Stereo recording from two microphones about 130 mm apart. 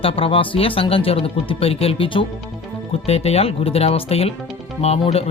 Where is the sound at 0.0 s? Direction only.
45° left (ahead or behind).